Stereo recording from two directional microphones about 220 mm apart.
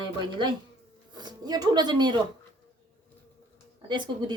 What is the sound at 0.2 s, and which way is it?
Speech, 20° right (ahead or behind).